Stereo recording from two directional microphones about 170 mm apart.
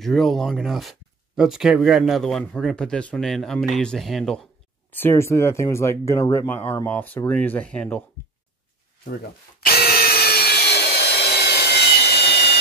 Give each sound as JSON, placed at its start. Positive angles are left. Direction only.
{"t": 0.0, "sound": "speech", "side_deg": 0}
{"t": 4.9, "sound": "speech", "side_deg": 15}
{"t": 9.7, "sound": "wood", "side_deg": 65}